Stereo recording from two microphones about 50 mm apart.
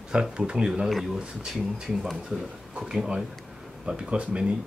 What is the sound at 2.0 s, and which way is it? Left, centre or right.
Speech, centre.